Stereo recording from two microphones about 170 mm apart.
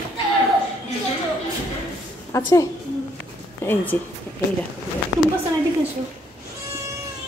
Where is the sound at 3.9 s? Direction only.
10° left (ahead or behind).